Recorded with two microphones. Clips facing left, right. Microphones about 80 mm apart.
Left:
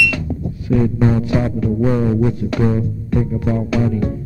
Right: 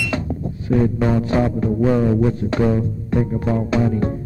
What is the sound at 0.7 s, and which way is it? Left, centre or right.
Speech, right.